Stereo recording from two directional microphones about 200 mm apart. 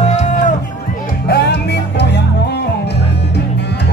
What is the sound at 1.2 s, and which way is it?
Music, 55° left (ahead or behind).